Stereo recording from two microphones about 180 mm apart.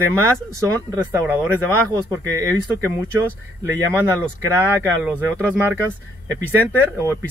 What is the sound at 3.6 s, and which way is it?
Speech, 10° right (ahead or behind).